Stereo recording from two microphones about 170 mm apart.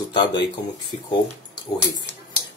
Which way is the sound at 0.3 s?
90° left.